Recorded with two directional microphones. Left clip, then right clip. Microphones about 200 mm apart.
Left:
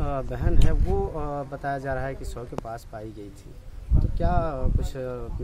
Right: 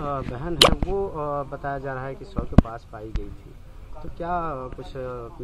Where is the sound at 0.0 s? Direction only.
65° left (ahead or behind).